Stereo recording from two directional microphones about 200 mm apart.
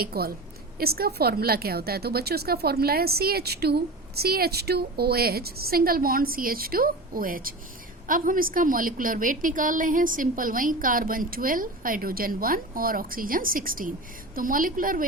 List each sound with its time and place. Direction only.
0.0 s a woman's voice: 50° right (ahead or behind)